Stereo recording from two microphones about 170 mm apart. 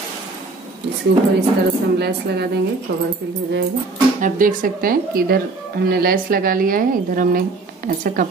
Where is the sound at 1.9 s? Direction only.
75° right (ahead or behind).